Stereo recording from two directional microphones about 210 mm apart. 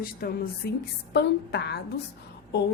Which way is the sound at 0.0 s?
45° left (ahead or behind).